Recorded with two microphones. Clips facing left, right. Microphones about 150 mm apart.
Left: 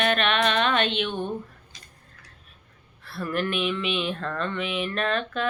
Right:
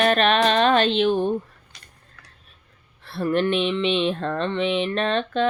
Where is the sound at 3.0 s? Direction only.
25° right (ahead or behind).